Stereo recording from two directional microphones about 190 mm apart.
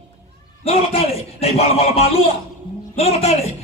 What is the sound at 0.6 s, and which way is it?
A man's voice, 30° left (ahead or behind).